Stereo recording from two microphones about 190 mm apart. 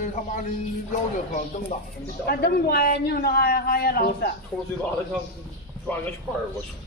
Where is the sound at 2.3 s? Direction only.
55° left (ahead or behind).